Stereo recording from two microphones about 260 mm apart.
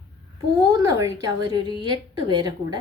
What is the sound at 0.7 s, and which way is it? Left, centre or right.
A woman's voice, centre.